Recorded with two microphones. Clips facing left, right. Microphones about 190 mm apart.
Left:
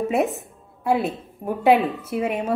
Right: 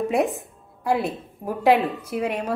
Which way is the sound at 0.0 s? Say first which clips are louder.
Even; centre (ahead or behind).